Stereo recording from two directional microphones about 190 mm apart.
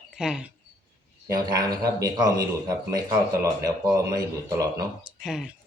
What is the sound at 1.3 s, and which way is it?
Speech, 20° right (ahead or behind).